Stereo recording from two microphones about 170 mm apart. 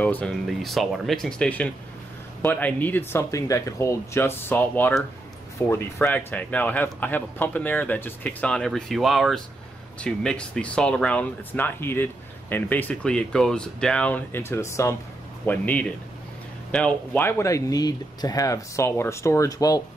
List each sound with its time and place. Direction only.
0.0 s speech: 10° left (ahead or behind)